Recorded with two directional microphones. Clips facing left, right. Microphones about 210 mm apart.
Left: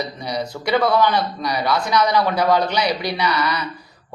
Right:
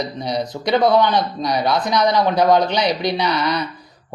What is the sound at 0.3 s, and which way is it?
Speech, 20° right (ahead or behind).